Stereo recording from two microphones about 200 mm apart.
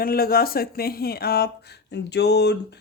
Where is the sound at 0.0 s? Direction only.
50° left (ahead or behind).